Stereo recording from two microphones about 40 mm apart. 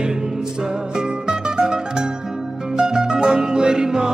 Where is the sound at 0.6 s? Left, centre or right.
Centre.